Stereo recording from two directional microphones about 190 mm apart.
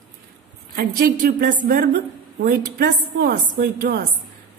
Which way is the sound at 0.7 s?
50° right (ahead or behind).